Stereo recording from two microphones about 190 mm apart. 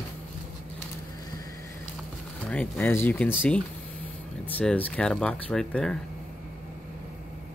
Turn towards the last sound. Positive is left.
turn(degrees=5)  # may be behind; listen again after turning